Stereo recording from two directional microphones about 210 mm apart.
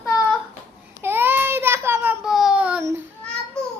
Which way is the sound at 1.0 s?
10° right (ahead or behind).